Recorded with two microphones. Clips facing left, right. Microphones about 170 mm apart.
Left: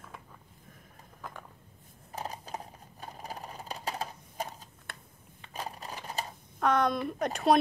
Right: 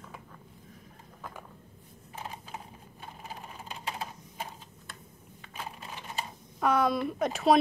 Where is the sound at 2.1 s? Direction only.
40° left (ahead or behind).